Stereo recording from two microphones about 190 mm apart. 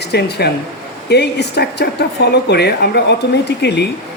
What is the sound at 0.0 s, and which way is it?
Speech, 60° left (ahead or behind).